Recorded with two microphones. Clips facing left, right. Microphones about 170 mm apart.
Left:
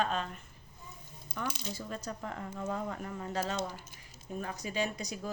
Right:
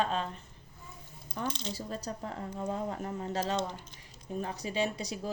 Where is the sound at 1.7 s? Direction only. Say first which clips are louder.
Right 2 dB; 35° right (ahead or behind).